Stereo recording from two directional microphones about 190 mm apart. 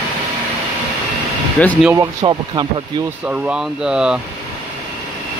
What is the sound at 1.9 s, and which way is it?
Speech, 15° right (ahead or behind).